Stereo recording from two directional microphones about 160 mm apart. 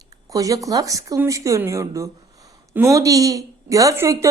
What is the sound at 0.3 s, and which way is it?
A woman's voice, 20° right (ahead or behind).